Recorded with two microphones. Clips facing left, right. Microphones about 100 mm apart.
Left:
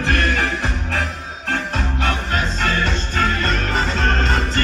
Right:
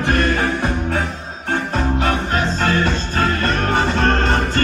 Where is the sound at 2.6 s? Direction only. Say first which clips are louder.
Right 3 dB; 35° right (ahead or behind).